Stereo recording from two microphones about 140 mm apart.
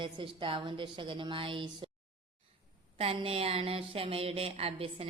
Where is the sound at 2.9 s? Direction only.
45° right (ahead or behind).